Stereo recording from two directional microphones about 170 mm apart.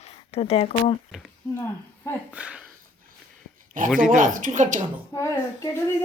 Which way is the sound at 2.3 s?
5° right (ahead or behind).